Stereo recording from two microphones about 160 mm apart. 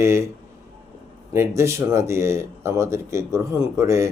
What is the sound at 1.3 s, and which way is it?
Speech, 15° right (ahead or behind).